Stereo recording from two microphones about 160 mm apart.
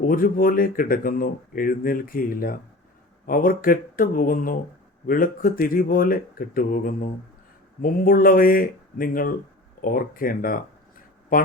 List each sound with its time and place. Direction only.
0.0 s speech: 60° left (ahead or behind)